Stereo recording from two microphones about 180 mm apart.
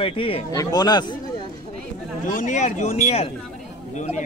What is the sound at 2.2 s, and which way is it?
Speech, 45° left (ahead or behind).